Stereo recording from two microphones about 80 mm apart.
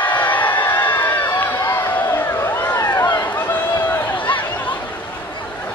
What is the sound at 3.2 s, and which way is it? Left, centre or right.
Run, left.